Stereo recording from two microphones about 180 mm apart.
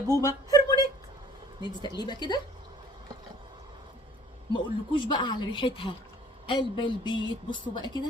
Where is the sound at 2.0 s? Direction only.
25° left (ahead or behind).